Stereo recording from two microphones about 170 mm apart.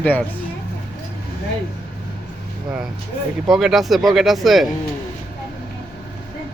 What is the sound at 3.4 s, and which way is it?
Speech, centre (ahead or behind).